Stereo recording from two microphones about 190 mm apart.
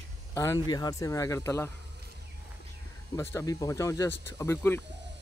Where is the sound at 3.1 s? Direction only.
15° left (ahead or behind).